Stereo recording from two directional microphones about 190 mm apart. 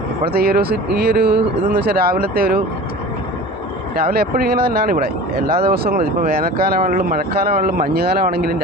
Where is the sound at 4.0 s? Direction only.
55° right (ahead or behind).